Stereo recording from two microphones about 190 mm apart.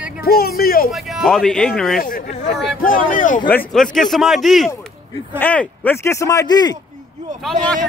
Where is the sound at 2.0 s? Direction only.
45° left (ahead or behind).